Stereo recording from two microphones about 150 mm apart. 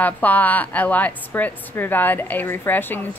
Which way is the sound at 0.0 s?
10° left (ahead or behind).